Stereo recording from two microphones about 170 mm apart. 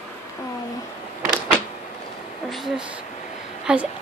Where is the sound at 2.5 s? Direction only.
Centre (ahead or behind).